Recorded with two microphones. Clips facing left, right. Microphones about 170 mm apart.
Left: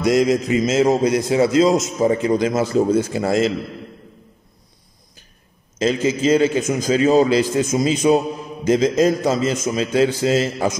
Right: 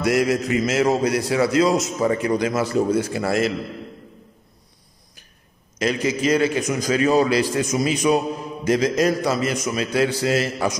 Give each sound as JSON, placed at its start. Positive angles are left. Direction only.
{"t": 0.0, "sound": "a man's voice", "side_deg": 20}
{"t": 5.8, "sound": "a man's voice", "side_deg": 25}